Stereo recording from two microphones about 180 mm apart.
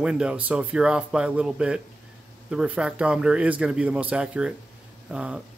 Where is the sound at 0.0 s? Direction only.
5° right (ahead or behind).